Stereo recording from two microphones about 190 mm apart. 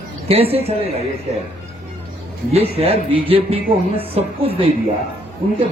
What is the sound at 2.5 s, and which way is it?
Speech, 30° right (ahead or behind).